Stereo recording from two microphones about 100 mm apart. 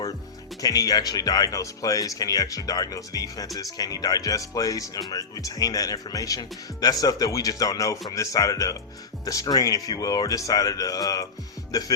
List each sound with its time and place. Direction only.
0.6 s speech: 35° left (ahead or behind)